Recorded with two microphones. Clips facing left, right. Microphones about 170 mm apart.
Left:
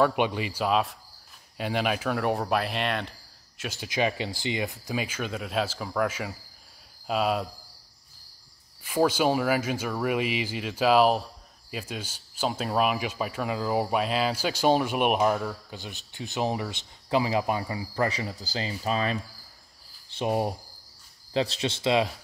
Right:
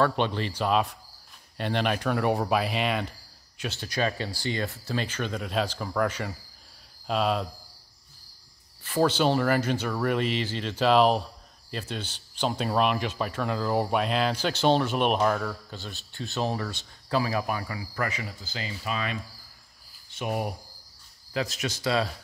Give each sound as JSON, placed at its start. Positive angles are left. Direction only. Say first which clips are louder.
{"t": 0.0, "sound": "speech", "louder": "left 1 dB", "side_deg": 10}
{"t": 8.8, "sound": "speech", "louder": "even", "side_deg": 10}